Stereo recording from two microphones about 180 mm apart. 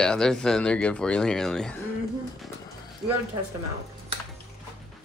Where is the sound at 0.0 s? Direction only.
5° left (ahead or behind).